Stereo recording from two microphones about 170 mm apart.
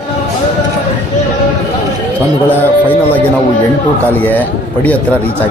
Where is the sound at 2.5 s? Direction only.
10° left (ahead or behind).